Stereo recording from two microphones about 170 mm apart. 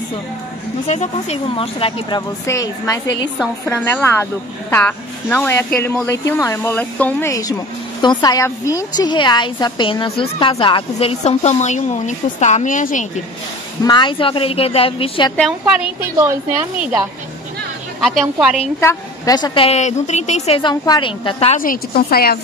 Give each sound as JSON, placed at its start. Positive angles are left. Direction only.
{"t": 0.8, "sound": "a woman's voice", "side_deg": 40}
{"t": 13.8, "sound": "a woman's voice", "side_deg": 30}
{"t": 15.3, "sound": "a woman's voice", "side_deg": 0}
{"t": 16.0, "sound": "a woman's voice", "side_deg": -15}
{"t": 18.8, "sound": "a woman's voice", "side_deg": 20}
{"t": 21.5, "sound": "a woman's voice", "side_deg": 60}